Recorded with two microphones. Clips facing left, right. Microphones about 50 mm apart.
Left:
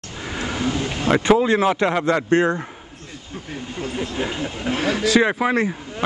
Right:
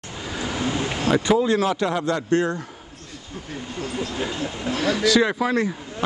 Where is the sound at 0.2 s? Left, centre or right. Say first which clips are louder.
Left 2 dB; left.